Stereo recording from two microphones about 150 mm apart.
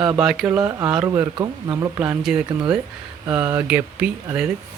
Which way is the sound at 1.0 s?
15° right (ahead or behind).